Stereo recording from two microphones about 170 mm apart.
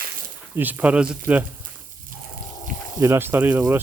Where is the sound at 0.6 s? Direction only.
10° right (ahead or behind).